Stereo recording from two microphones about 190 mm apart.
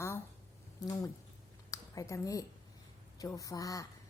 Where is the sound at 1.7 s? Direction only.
15° left (ahead or behind).